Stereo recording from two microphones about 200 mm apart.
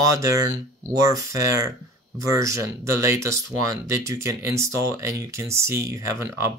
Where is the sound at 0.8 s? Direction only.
15° right (ahead or behind).